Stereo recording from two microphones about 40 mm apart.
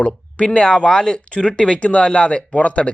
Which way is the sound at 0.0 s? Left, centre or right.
Left.